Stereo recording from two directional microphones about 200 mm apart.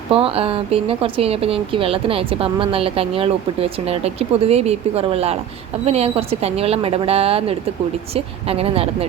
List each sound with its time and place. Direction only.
0.1 s speech: 30° right (ahead or behind)